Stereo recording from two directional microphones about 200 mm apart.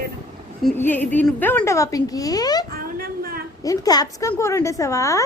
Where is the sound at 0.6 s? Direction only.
10° left (ahead or behind).